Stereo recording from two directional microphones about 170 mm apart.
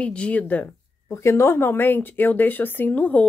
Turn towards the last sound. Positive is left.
turn(degrees=10)  # may be behind; listen again after turning